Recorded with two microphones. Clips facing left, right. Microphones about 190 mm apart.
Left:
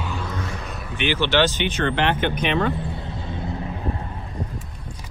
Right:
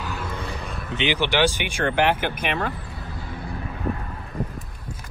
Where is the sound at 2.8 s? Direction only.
25° left (ahead or behind).